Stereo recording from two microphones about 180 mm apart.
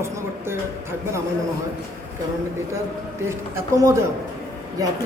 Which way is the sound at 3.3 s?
15° right (ahead or behind).